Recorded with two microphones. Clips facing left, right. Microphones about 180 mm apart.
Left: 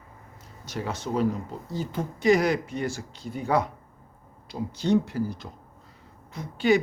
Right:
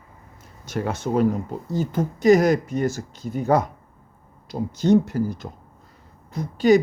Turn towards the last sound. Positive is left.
turn(degrees=-40)  # may be behind; listen again after turning